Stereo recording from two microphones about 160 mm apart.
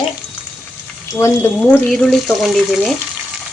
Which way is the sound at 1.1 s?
15° left (ahead or behind).